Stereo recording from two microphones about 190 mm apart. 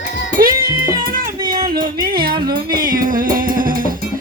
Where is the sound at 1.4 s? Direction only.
25° right (ahead or behind).